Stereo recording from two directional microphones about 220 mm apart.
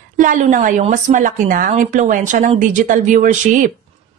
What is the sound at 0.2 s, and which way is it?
Speech, 35° right (ahead or behind).